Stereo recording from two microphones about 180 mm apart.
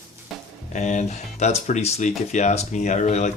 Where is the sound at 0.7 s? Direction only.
40° left (ahead or behind).